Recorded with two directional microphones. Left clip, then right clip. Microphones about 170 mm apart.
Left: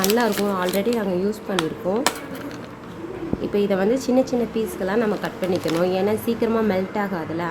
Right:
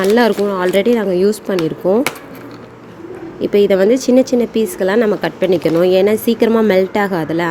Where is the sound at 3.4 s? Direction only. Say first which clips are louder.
Right 10 dB; 40° right (ahead or behind).